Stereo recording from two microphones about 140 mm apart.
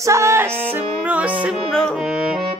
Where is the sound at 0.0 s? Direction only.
20° right (ahead or behind).